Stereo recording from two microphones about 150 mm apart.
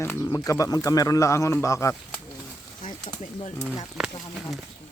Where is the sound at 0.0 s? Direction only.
15° left (ahead or behind).